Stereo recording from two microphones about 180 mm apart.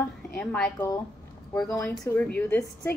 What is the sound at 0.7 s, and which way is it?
Speech, 20° left (ahead or behind).